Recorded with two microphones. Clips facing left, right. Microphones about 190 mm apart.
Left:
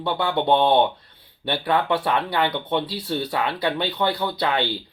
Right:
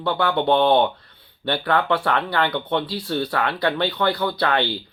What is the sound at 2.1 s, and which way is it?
Speech, 10° left (ahead or behind).